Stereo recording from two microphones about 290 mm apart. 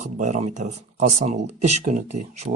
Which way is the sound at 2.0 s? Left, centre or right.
Right.